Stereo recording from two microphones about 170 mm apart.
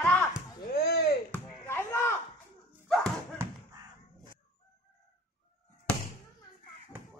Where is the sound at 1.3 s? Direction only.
15° left (ahead or behind).